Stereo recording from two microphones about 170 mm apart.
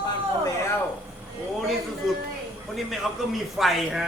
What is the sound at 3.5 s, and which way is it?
Speech, centre (ahead or behind).